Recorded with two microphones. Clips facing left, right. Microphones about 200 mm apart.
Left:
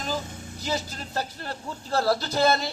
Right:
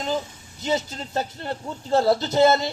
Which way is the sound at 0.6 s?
25° right (ahead or behind).